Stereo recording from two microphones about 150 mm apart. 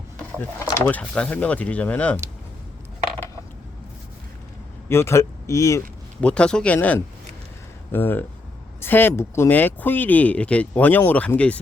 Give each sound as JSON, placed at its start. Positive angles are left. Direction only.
{"t": 0.6, "sound": "speech", "side_deg": 15}
{"t": 4.9, "sound": "speech", "side_deg": 15}
{"t": 6.2, "sound": "speech", "side_deg": 5}